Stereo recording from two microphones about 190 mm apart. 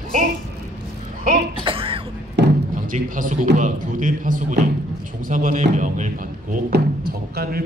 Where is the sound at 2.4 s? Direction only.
65° right (ahead or behind).